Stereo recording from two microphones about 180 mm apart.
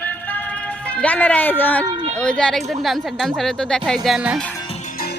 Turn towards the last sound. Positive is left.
turn(degrees=-5)  # may be behind; listen again after turning